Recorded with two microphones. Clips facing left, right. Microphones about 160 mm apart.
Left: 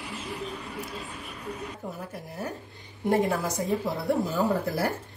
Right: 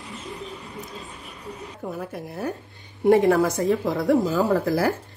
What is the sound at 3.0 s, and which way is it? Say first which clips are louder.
Speech: right 8 dB; 75° right (ahead or behind).